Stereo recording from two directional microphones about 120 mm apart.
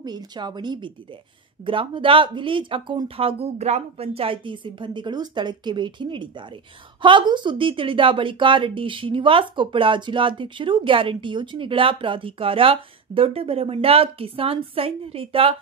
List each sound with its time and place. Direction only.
0.0 s speech: 35° right (ahead or behind); by 15.5 s 50° right (ahead or behind)